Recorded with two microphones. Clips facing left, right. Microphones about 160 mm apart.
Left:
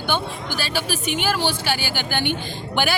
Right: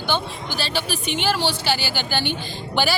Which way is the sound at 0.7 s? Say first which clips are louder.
Left 2 dB; 10° left (ahead or behind).